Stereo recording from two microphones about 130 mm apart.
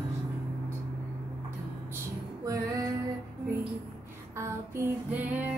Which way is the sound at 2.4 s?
25° right (ahead or behind).